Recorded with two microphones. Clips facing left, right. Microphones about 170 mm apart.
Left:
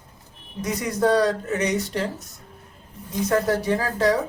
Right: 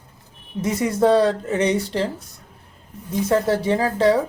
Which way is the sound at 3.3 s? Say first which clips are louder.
Right 2 dB; 25° right (ahead or behind).